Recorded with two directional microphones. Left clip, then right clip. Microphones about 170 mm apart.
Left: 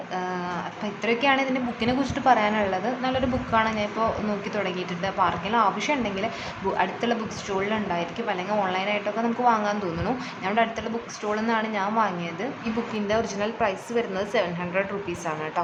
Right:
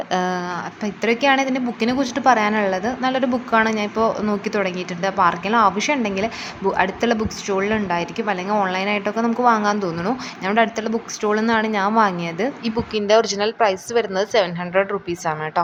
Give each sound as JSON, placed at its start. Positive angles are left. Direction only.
{"t": 0.1, "sound": "speech", "side_deg": -50}
{"t": 1.0, "sound": "a woman's voice", "side_deg": -35}